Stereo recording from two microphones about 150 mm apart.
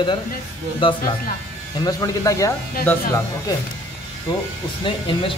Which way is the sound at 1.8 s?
25° left (ahead or behind).